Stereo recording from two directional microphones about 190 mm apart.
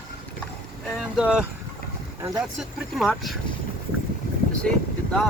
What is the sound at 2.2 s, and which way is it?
Speech, 20° right (ahead or behind).